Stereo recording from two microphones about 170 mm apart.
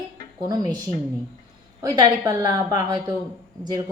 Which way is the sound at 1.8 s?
25° right (ahead or behind).